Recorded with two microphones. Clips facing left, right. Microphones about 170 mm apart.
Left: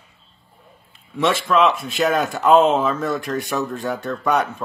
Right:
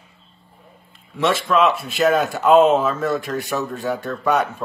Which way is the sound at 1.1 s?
Centre (ahead or behind).